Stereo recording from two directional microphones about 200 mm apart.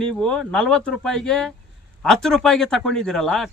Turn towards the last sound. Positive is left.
turn(degrees=0)  # may be behind; listen again after turning